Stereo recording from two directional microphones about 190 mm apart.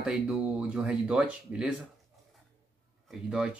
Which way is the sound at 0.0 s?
5° right (ahead or behind).